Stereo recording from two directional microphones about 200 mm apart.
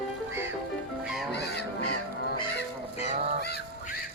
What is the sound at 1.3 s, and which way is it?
Honk, 55° left (ahead or behind).